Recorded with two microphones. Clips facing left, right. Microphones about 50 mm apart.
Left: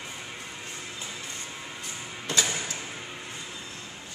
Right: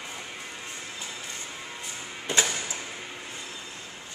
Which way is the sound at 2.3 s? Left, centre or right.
Centre.